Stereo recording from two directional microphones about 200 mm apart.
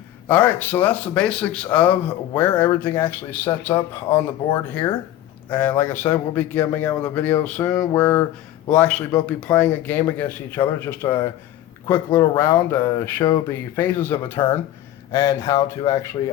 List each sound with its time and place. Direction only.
0.3 s a man's voice: 10° left (ahead or behind)
4.7 s speech: 20° left (ahead or behind)
5.5 s a man's voice: 10° left (ahead or behind)